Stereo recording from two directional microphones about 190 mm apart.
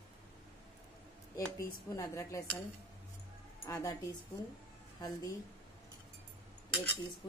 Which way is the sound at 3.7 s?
15° left (ahead or behind).